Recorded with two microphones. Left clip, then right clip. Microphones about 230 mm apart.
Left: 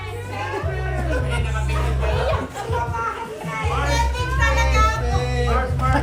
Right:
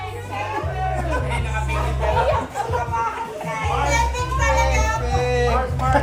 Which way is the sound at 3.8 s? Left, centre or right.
Centre.